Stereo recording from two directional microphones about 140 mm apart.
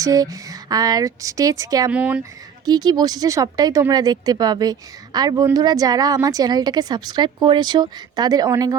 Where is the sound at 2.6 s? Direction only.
30° right (ahead or behind).